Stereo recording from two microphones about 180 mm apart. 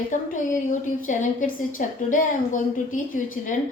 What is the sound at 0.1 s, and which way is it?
A woman's voice, 45° left (ahead or behind).